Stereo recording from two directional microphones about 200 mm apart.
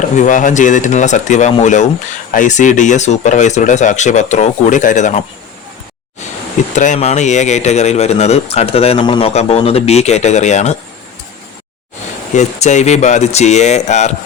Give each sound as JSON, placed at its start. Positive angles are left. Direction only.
{"t": 0.0, "sound": "speech", "side_deg": 40}
{"t": 6.7, "sound": "speech", "side_deg": 35}
{"t": 12.3, "sound": "speech", "side_deg": 35}